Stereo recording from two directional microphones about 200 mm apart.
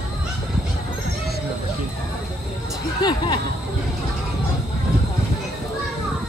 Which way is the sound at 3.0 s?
20° left (ahead or behind).